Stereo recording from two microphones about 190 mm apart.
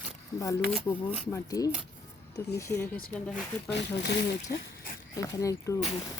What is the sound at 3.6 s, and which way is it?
Speech, 65° left (ahead or behind).